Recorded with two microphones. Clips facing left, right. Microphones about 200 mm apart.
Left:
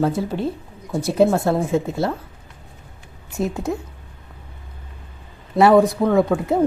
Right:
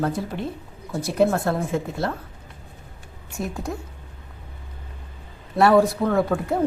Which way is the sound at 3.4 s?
20° left (ahead or behind).